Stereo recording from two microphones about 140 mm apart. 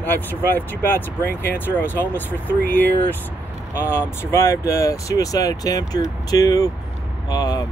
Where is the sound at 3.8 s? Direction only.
15° left (ahead or behind).